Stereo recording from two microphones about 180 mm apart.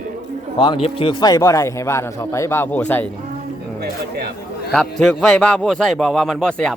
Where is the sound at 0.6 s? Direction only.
30° left (ahead or behind); by 3.1 s 10° left (ahead or behind).